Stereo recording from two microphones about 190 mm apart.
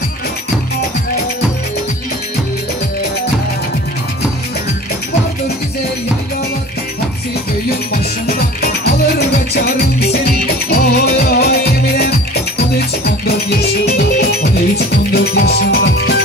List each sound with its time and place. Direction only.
8.3 s music: 55° left (ahead or behind)